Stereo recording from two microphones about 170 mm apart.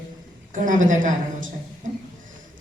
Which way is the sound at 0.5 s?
50° right (ahead or behind).